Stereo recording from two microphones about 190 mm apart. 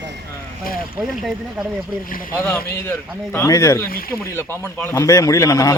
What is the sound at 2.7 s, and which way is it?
A man's voice, 10° left (ahead or behind).